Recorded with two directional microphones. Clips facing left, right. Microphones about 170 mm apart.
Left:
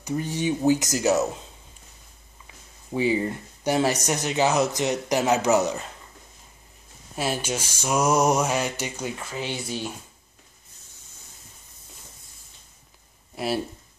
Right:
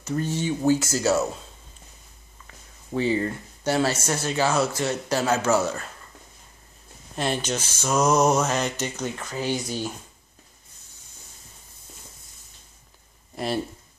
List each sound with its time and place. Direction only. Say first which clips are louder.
0.0 s speech: even; 15° left (ahead or behind)
2.4 s speech: right 1 dB; 10° left (ahead or behind)
7.2 s speech: right 1 dB; 5° left (ahead or behind)